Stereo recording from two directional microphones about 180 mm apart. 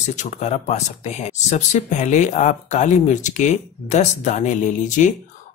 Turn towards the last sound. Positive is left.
turn(degrees=45)  # may be behind; listen again after turning